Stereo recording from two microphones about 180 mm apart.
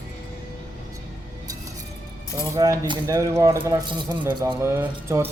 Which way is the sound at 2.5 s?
20° right (ahead or behind).